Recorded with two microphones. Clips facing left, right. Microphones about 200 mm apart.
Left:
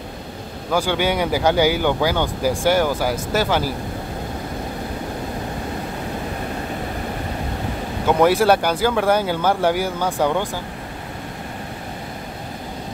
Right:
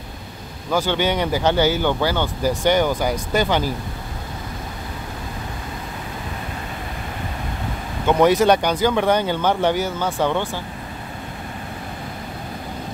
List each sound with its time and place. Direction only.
0.7 s speech: 10° left (ahead or behind)
8.1 s speech: 5° left (ahead or behind)